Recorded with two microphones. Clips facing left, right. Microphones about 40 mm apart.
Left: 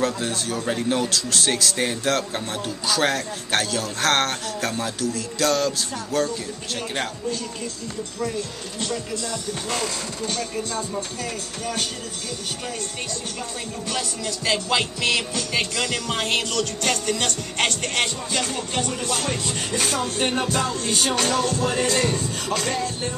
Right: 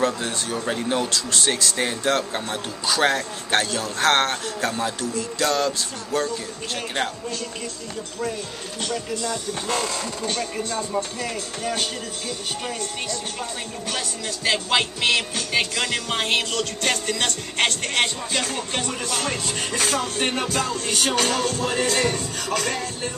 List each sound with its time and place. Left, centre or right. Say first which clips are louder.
0.0 s a man's voice: right 1 dB; centre
10.2 s music: left 1 dB; right
11.6 s speech: right 2 dB; right
13.8 s speech: left 1 dB; right
17.9 s music: right 1 dB; right